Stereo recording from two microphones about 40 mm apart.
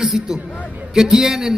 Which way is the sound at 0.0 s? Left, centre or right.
Centre.